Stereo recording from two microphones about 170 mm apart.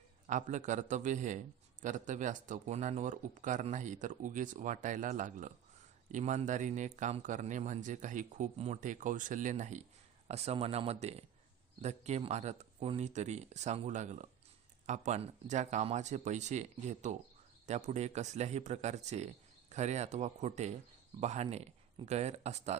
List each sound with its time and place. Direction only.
0.3 s speech: 45° right (ahead or behind)